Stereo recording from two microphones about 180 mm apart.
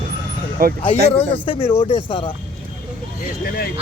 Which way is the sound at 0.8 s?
30° left (ahead or behind).